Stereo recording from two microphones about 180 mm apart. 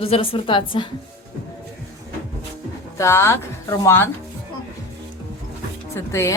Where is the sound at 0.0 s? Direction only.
30° left (ahead or behind).